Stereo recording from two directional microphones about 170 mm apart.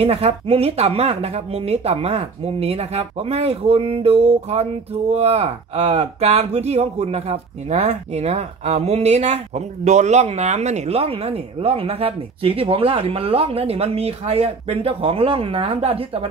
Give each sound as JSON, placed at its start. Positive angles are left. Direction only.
{"t": 0.0, "sound": "speech", "side_deg": -35}